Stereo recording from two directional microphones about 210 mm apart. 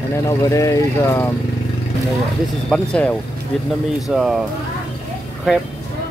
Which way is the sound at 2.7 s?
5° left (ahead or behind).